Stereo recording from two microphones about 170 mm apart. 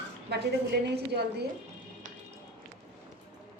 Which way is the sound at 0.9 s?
75° right (ahead or behind).